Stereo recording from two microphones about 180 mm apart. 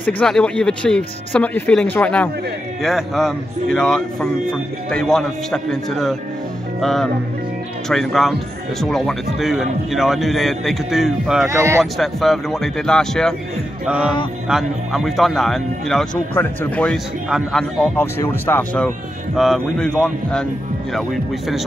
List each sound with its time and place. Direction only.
0.0 s speech: 5° left (ahead or behind)
6.8 s music: centre (ahead or behind)
7.9 s speech: centre (ahead or behind)
11.4 s speech: 15° right (ahead or behind)
11.8 s speech: centre (ahead or behind)
19.3 s speech: centre (ahead or behind)